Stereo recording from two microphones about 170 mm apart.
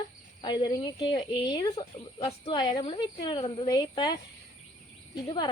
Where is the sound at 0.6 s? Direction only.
25° left (ahead or behind).